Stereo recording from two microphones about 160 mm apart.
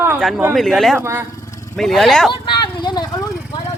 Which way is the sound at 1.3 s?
20° left (ahead or behind).